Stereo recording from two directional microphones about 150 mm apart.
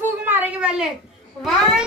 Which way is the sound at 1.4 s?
Centre (ahead or behind).